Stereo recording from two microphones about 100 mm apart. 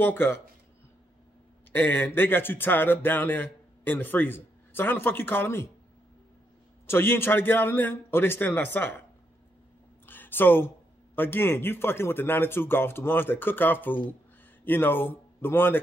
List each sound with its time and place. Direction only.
0.0 s speech: 20° left (ahead or behind)
1.7 s speech: 20° left (ahead or behind)
6.9 s speech: 25° left (ahead or behind)
10.0 s a sound: 20° left (ahead or behind)
11.1 s speech: 20° left (ahead or behind)